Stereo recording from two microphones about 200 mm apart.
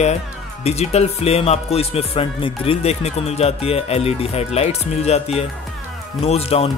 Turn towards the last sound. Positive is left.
turn(degrees=30)  # may be behind; listen again after turning